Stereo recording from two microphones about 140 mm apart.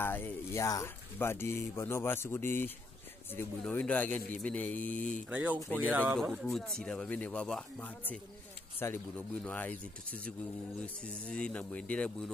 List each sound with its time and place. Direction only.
0.0 s a man's voice: 15° left (ahead or behind)
5.3 s speech: 10° right (ahead or behind)
5.6 s a man's voice: 10° left (ahead or behind)
5.9 s speech: 10° right (ahead or behind)
6.5 s a man's voice: 5° left (ahead or behind)